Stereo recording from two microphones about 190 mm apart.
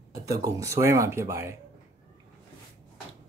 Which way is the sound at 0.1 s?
15° right (ahead or behind).